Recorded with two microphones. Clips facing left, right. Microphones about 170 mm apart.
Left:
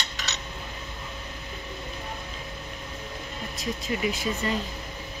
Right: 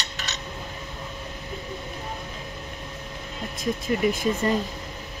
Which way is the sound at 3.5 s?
50° right (ahead or behind).